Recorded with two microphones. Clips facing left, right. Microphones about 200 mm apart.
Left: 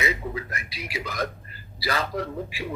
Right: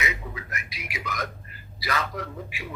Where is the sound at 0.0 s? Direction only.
30° left (ahead or behind).